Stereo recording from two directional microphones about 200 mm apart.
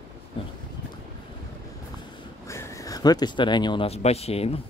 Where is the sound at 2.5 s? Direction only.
15° left (ahead or behind); by 4.6 s 30° left (ahead or behind).